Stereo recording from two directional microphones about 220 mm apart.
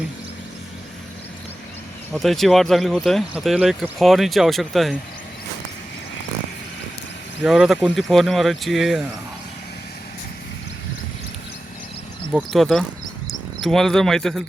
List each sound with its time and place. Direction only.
2.1 s speech: centre (ahead or behind)
7.4 s speech: 5° right (ahead or behind)
12.3 s speech: centre (ahead or behind)